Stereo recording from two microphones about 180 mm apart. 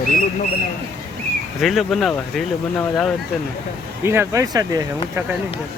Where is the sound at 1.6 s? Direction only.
Centre (ahead or behind).